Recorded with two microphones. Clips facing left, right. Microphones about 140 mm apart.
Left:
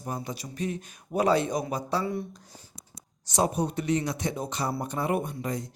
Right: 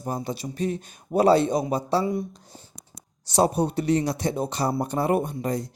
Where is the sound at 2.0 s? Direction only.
15° right (ahead or behind).